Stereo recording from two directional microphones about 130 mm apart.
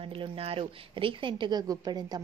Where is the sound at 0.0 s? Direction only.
45° right (ahead or behind).